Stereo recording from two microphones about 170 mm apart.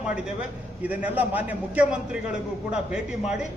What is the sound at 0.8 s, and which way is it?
A man's voice, 10° right (ahead or behind).